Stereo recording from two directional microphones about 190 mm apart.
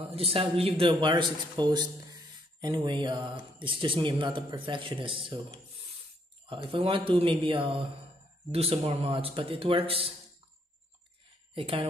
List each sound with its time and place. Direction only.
0.0 s a man's voice: 30° right (ahead or behind)
6.5 s a man's voice: 25° right (ahead or behind)
11.5 s speech: 30° right (ahead or behind)